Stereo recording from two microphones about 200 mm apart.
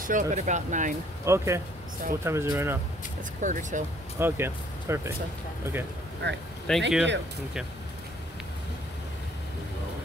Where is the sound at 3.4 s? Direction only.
40° right (ahead or behind).